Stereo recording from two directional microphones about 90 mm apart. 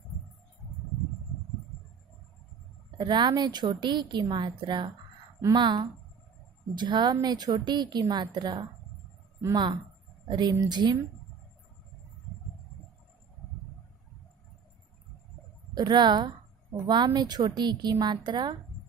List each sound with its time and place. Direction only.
3.0 s a woman's voice: 55° right (ahead or behind)
15.7 s a woman's voice: 50° right (ahead or behind)